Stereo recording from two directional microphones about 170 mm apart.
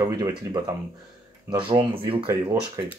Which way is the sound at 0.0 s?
20° right (ahead or behind).